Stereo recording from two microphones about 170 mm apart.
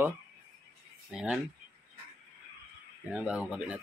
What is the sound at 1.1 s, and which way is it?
Speech, 5° right (ahead or behind).